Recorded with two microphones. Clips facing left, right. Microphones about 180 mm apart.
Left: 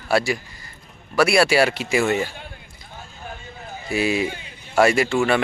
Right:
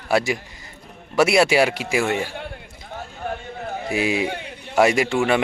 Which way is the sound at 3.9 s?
15° right (ahead or behind).